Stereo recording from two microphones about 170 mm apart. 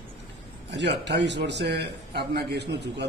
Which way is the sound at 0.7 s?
90° right.